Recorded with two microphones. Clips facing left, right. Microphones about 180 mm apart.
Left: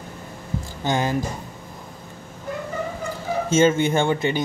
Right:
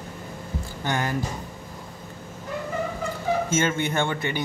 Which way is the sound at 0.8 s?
15° left (ahead or behind).